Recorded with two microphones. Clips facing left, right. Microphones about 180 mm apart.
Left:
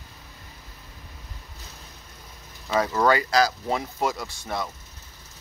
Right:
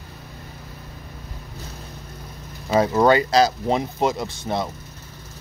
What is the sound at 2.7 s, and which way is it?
Speech, 25° right (ahead or behind).